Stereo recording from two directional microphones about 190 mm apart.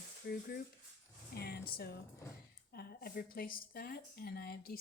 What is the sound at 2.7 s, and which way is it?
Speech, 55° left (ahead or behind).